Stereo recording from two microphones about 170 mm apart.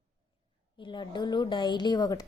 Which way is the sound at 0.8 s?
25° left (ahead or behind).